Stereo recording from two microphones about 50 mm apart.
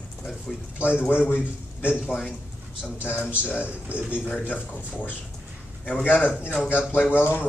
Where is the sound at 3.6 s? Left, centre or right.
Right.